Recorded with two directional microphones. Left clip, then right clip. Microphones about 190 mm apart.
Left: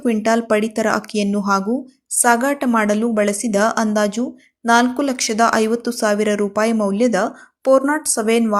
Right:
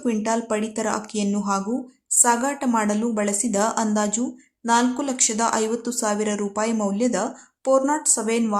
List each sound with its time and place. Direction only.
0.0 s a woman's voice: 15° left (ahead or behind)